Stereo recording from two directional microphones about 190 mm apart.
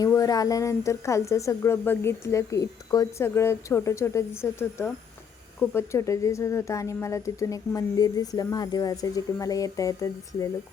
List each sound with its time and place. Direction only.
0.0 s speech: 15° left (ahead or behind)